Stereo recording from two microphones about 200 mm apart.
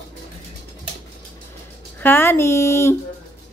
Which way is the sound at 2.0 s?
10° left (ahead or behind).